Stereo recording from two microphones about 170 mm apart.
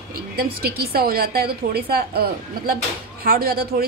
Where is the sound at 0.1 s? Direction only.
60° right (ahead or behind).